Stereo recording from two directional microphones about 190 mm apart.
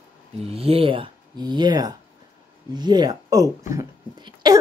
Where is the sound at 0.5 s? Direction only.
30° right (ahead or behind).